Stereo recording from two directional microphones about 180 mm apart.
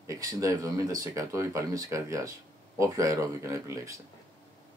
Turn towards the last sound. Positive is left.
turn(degrees=-15)  # may be behind; listen again after turning